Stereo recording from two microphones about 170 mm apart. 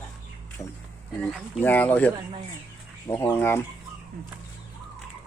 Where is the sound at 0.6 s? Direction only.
20° left (ahead or behind).